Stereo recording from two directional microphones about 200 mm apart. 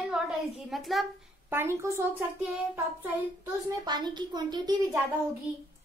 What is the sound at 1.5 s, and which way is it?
Speech, 10° right (ahead or behind).